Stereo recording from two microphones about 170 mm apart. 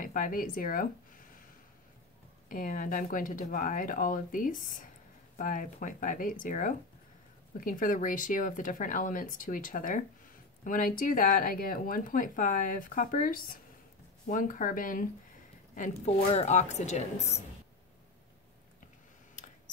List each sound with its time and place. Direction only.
0.0 s speech: 50° left (ahead or behind)
2.5 s speech: 50° left (ahead or behind)
15.7 s a woman's voice: 45° left (ahead or behind)